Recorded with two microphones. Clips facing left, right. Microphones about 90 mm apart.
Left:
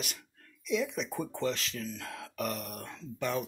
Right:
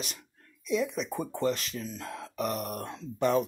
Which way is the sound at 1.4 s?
45° right (ahead or behind).